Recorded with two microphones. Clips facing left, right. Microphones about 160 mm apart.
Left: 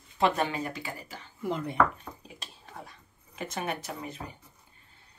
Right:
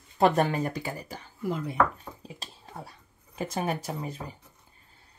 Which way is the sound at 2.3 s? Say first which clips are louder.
Right 2 dB; 30° right (ahead or behind).